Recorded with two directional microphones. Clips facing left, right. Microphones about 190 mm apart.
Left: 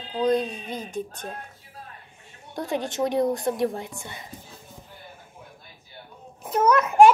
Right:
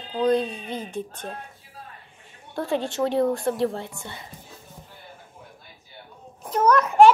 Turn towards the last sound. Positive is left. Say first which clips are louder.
# even
turn(degrees=10)  # may be behind; listen again after turning